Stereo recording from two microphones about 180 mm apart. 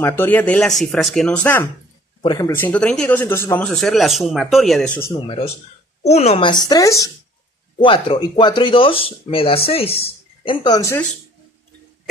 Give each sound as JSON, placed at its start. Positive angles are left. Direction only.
{"t": 0.0, "sound": "speech", "side_deg": 10}
{"t": 5.2, "sound": "speech", "side_deg": 30}